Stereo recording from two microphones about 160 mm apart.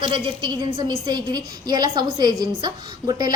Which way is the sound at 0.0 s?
30° right (ahead or behind).